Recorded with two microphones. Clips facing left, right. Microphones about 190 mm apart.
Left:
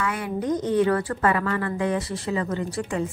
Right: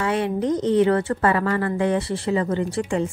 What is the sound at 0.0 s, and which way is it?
A woman's voice, 30° right (ahead or behind).